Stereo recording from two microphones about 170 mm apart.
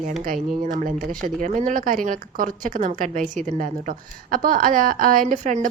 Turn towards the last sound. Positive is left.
turn(degrees=-50)  # may be behind; listen again after turning